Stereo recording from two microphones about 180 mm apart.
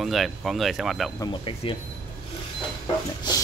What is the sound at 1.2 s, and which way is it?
Speech, 30° left (ahead or behind).